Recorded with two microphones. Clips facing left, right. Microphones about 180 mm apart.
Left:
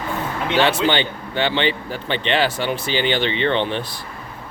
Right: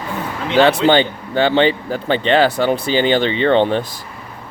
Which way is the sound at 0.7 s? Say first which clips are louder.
Right 6 dB; 40° right (ahead or behind).